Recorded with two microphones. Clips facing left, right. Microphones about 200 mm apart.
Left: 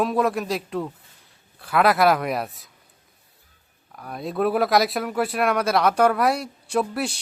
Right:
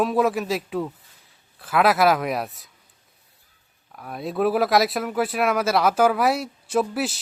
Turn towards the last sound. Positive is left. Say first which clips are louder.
# right 1 dB
turn(degrees=0)  # may be behind; listen again after turning